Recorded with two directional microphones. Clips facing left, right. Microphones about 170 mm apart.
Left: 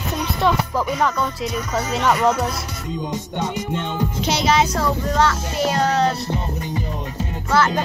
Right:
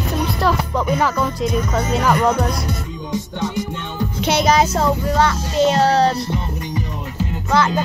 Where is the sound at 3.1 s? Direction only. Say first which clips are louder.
Right 7 dB; 20° left (ahead or behind).